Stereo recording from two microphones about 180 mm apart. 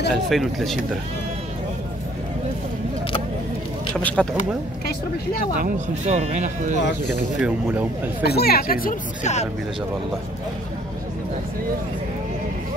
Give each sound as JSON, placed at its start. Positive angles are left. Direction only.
{"t": 0.1, "sound": "speech", "side_deg": 0}
{"t": 3.9, "sound": "speech", "side_deg": 5}
{"t": 5.6, "sound": "speech", "side_deg": -40}
{"t": 7.3, "sound": "speech", "side_deg": -5}
{"t": 8.2, "sound": "speech", "side_deg": 60}